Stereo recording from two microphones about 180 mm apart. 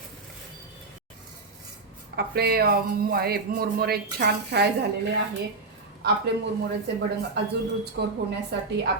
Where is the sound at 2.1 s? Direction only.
60° right (ahead or behind).